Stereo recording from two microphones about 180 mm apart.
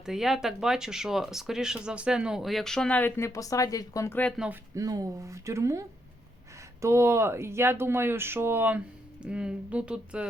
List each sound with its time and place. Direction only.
0.0 s speech: centre (ahead or behind)
4.7 s speech: 20° right (ahead or behind)
6.8 s speech: 15° right (ahead or behind)